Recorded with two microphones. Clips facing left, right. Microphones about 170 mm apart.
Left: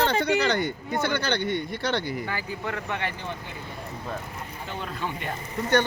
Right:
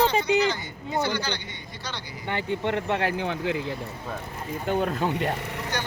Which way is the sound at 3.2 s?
90° right.